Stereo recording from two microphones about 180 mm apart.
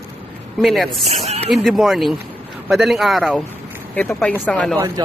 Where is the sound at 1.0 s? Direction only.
35° right (ahead or behind).